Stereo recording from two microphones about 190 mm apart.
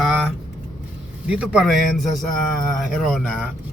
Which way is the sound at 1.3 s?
5° right (ahead or behind).